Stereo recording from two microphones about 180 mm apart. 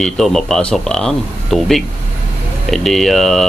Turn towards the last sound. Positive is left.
turn(degrees=0)  # may be behind; listen again after turning